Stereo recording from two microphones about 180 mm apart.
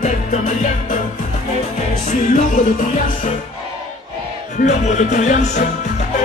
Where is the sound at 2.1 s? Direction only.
45° left (ahead or behind).